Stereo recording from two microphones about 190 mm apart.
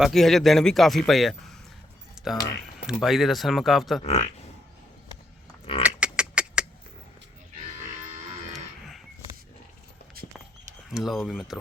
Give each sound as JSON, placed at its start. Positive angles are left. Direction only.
{"t": 0.0, "sound": "speech", "side_deg": 0}
{"t": 2.2, "sound": "a sound", "side_deg": -5}
{"t": 2.8, "sound": "speech", "side_deg": 0}
{"t": 4.0, "sound": "speech", "side_deg": 30}
{"t": 5.8, "sound": "duck", "side_deg": -5}
{"t": 10.2, "sound": "a sound", "side_deg": -50}
{"t": 10.8, "sound": "speech", "side_deg": 0}